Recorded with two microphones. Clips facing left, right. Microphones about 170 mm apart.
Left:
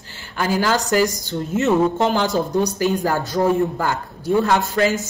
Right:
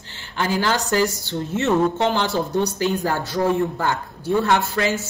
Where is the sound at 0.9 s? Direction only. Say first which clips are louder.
Left 2 dB; 15° left (ahead or behind).